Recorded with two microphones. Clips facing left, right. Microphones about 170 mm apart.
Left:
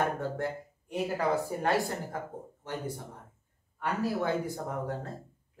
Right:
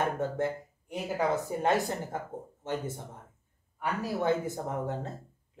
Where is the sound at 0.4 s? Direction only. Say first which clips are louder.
Right 3 dB; 20° right (ahead or behind).